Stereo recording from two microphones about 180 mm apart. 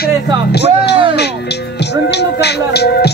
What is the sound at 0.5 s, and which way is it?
Speech, 65° left (ahead or behind).